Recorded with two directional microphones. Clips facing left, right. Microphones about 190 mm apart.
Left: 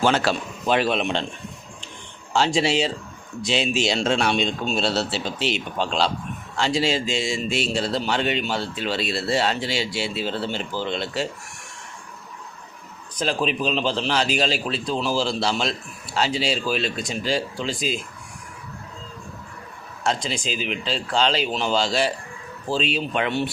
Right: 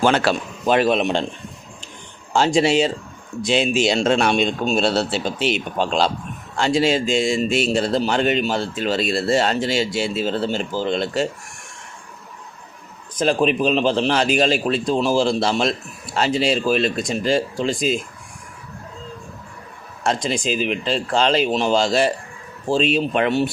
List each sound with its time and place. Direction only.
0.0 s speech: 55° right (ahead or behind)
2.3 s speech: 50° right (ahead or behind)
13.1 s speech: 50° right (ahead or behind)
20.2 s speech: 50° right (ahead or behind)